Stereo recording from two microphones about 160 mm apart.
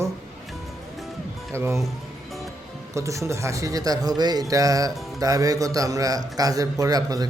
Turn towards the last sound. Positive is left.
turn(degrees=-25)  # may be behind; listen again after turning